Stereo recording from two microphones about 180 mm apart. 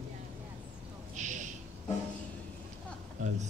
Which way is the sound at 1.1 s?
45° right (ahead or behind).